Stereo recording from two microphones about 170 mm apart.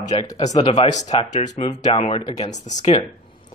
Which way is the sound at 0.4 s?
40° left (ahead or behind).